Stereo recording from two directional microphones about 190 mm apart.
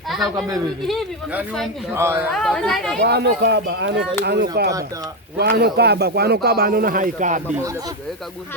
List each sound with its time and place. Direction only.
0.1 s a man's voice: centre (ahead or behind)
2.3 s speech: 5° left (ahead or behind)
3.0 s speech: 60° right (ahead or behind); by 7.4 s 40° right (ahead or behind)